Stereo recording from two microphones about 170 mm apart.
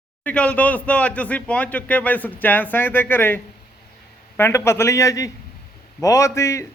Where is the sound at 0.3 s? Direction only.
10° left (ahead or behind).